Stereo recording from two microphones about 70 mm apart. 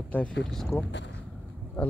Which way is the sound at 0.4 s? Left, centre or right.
Centre.